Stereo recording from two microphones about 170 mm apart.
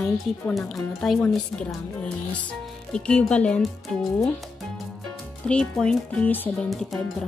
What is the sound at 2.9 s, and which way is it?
Speech, 5° left (ahead or behind).